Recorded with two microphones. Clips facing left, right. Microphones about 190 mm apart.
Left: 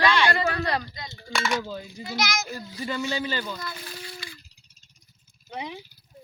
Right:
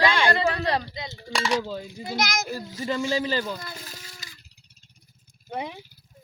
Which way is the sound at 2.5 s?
40° right (ahead or behind).